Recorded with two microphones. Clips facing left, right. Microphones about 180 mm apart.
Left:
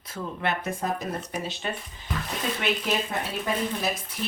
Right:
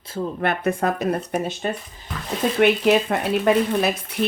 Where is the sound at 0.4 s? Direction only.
65° right (ahead or behind).